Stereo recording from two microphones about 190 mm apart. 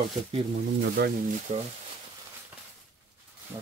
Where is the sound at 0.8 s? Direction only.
60° right (ahead or behind).